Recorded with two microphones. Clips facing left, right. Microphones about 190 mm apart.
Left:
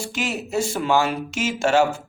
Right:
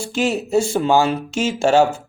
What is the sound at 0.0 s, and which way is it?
Speech, 30° right (ahead or behind).